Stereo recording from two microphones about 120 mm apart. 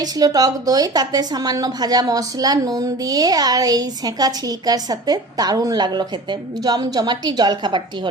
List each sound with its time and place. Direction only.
0.0 s a woman's voice: 30° right (ahead or behind)